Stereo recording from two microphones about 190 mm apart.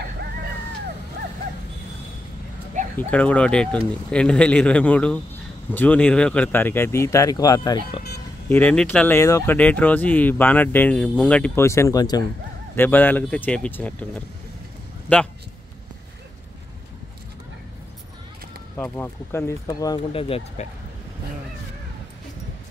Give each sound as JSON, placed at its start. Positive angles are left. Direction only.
{"t": 3.0, "sound": "speech", "side_deg": 10}
{"t": 8.5, "sound": "speech", "side_deg": 5}
{"t": 18.8, "sound": "speech", "side_deg": 10}